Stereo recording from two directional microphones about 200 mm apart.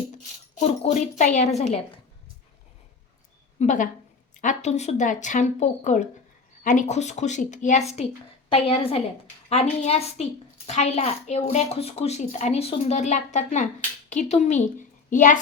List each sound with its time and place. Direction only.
0.8 s a child's voice: 35° left (ahead or behind)
3.6 s a child's voice: 40° left (ahead or behind)